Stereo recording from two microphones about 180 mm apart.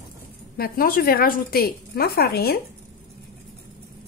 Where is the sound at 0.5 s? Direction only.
55° left (ahead or behind).